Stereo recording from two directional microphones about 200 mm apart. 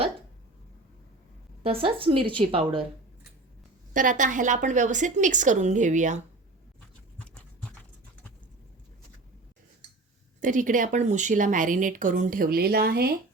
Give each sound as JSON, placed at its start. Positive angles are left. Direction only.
{"t": 1.6, "sound": "a woman's voice", "side_deg": -30}
{"t": 3.9, "sound": "a woman's voice", "side_deg": -40}
{"t": 10.4, "sound": "a woman's voice", "side_deg": -40}